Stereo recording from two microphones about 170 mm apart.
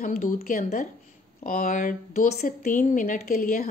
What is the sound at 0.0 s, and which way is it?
Speech, 50° left (ahead or behind).